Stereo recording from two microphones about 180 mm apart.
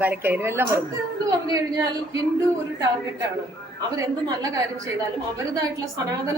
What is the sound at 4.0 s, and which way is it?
A woman's voice, 20° right (ahead or behind).